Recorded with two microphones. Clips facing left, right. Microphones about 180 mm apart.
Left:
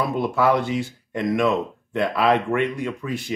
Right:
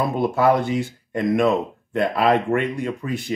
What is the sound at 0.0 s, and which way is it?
Speech, 50° right (ahead or behind).